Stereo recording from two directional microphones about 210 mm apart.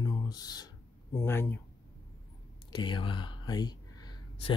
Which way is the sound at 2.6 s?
20° left (ahead or behind).